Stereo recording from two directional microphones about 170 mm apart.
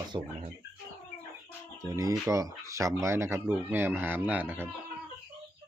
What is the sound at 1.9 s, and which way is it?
Speech, 20° right (ahead or behind).